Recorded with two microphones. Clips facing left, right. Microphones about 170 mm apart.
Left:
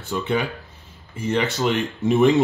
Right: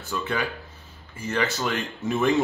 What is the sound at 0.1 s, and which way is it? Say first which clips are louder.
Speech: left 5 dB; 20° left (ahead or behind).